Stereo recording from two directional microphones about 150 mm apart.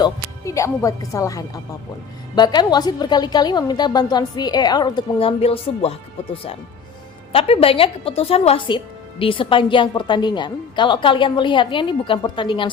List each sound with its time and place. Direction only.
0.0 s a woman's voice: 20° left (ahead or behind)
5.4 s a woman's voice: 40° left (ahead or behind)
7.3 s a woman's voice: 40° left (ahead or behind)